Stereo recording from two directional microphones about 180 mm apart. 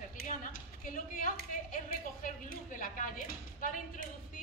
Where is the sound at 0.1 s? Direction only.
50° left (ahead or behind).